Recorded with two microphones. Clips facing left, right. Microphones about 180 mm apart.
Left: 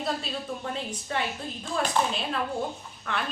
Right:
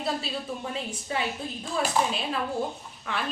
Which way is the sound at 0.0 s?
5° right (ahead or behind).